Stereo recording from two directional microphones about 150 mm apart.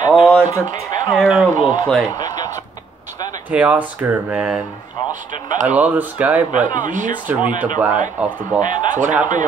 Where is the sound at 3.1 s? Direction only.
25° left (ahead or behind).